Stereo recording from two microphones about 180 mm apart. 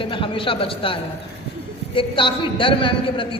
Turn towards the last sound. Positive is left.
turn(degrees=30)  # may be behind; listen again after turning